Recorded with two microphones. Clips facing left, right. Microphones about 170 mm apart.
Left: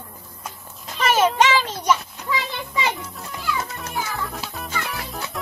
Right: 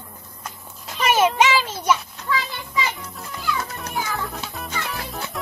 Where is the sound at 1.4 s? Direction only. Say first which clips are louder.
Even; 10° right (ahead or behind).